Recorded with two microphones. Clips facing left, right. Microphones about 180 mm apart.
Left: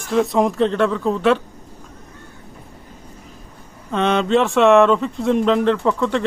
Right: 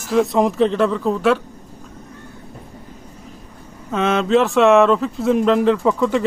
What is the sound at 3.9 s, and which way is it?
Speech, centre (ahead or behind).